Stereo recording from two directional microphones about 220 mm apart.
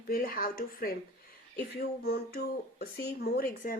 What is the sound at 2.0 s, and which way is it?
Speech, 45° left (ahead or behind).